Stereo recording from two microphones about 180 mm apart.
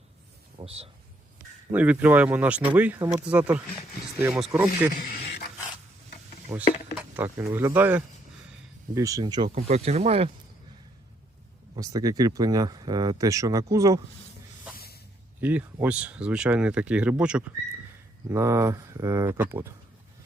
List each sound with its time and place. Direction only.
0.6 s speech: 35° right (ahead or behind)
1.7 s speech: 10° right (ahead or behind)
4.9 s a sound: 55° left (ahead or behind)
6.5 s speech: 15° right (ahead or behind)
9.6 s speech: 35° right (ahead or behind)
11.8 s speech: 20° right (ahead or behind)
15.4 s speech: 10° right (ahead or behind)